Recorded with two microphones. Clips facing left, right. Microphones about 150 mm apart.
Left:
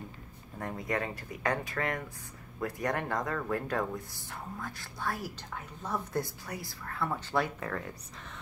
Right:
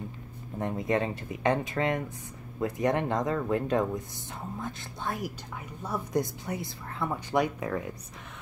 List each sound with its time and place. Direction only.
0.6 s speech: 20° right (ahead or behind)